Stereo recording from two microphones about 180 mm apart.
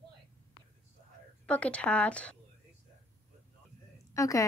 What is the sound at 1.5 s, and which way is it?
Speech, 5° left (ahead or behind).